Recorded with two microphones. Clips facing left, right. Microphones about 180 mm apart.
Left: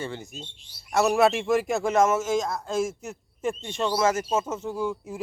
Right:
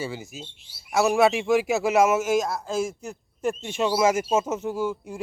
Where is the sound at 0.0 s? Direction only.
5° right (ahead or behind).